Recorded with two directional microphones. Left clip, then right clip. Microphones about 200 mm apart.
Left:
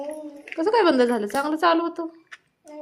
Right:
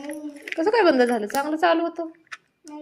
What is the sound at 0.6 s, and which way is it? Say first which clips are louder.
Speech: even; 10° left (ahead or behind).